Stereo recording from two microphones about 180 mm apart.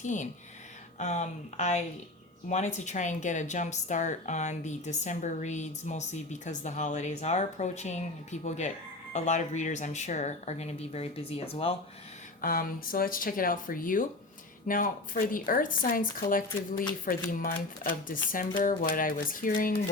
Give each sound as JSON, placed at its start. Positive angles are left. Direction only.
{"t": 0.0, "sound": "a woman's voice", "side_deg": 45}
{"t": 12.4, "sound": "speech", "side_deg": 55}